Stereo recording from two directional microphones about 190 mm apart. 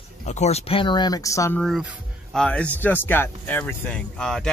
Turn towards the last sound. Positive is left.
turn(degrees=5)  # may be behind; listen again after turning